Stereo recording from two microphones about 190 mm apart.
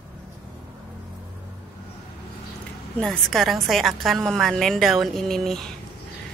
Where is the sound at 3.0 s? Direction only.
Centre (ahead or behind).